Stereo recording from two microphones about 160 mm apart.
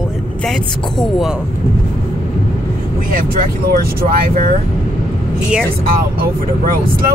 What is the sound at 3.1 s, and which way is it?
Speech, 60° right (ahead or behind).